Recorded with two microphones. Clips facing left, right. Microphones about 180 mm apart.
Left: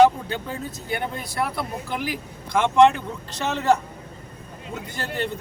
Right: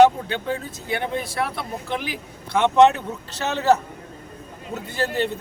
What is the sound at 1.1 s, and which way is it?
Speech, centre (ahead or behind).